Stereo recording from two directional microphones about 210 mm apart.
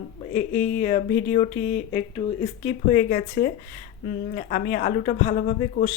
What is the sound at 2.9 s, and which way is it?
Speech, 45° left (ahead or behind).